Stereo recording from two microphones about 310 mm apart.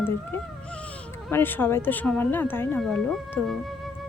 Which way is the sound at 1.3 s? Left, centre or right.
Centre.